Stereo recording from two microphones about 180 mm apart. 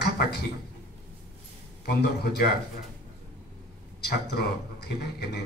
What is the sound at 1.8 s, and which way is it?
Speech, 60° left (ahead or behind).